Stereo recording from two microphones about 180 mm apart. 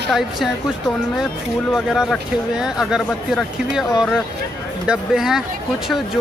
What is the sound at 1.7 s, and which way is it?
Speech, centre (ahead or behind).